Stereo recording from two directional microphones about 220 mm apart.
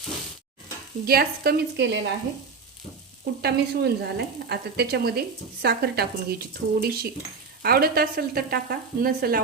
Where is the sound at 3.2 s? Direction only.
45° right (ahead or behind).